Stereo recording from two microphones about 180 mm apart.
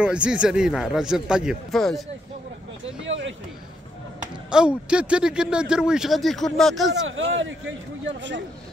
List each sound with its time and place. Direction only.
0.0 s speech: 5° right (ahead or behind)
3.0 s a sound: 90° right
4.5 s speech: 5° right (ahead or behind)
7.1 s speech: 90° right